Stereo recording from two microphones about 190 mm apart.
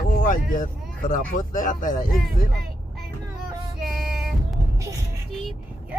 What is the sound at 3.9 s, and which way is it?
Music, centre (ahead or behind).